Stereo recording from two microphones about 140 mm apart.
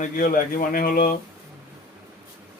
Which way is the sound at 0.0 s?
85° left.